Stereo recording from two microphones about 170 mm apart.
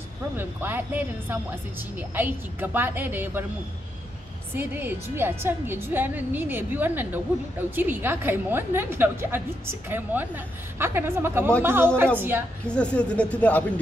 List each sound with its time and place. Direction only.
0.4 s a woman's voice: 10° right (ahead or behind)
4.6 s a woman's voice: 10° right (ahead or behind)
12.6 s speech: 5° left (ahead or behind)